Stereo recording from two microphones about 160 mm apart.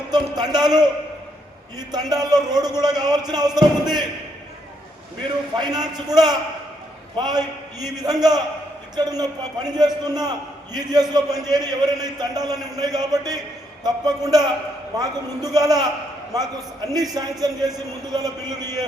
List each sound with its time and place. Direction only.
0.1 s a man's voice: 25° right (ahead or behind)
5.5 s a man's voice: 25° right (ahead or behind)
15.5 s a man's voice: 25° right (ahead or behind)